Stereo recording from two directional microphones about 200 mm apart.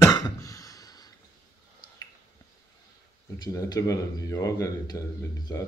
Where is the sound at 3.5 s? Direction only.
20° left (ahead or behind).